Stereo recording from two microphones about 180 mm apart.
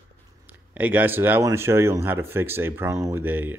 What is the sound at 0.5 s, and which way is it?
Speech, 10° right (ahead or behind).